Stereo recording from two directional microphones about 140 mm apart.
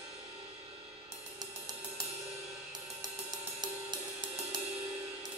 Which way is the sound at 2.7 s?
30° right (ahead or behind).